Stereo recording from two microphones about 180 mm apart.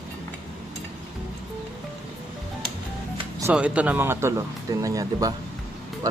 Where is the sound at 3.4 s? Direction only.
5° right (ahead or behind).